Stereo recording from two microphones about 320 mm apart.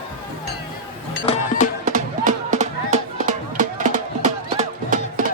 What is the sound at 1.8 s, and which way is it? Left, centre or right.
Music, right.